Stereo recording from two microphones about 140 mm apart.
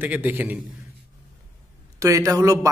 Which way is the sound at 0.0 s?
10° right (ahead or behind).